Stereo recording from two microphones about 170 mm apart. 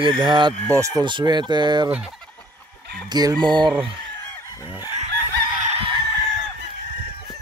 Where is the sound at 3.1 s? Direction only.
25° right (ahead or behind).